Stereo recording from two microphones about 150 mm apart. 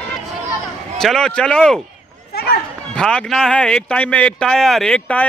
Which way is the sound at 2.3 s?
90° left.